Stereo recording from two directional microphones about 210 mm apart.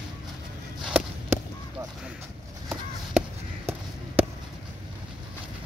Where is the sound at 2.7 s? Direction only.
5° right (ahead or behind).